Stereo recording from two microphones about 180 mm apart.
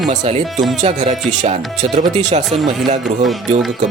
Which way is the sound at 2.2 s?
40° right (ahead or behind).